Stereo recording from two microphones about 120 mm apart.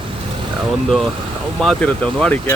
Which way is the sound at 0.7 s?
Centre (ahead or behind).